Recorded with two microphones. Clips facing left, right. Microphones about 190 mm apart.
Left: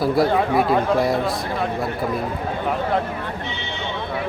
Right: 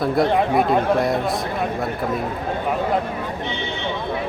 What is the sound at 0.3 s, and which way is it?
Speech, 20° right (ahead or behind).